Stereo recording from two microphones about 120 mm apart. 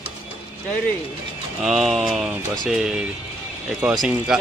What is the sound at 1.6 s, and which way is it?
Speech, centre (ahead or behind).